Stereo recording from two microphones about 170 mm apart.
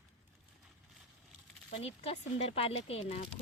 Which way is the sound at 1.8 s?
35° left (ahead or behind).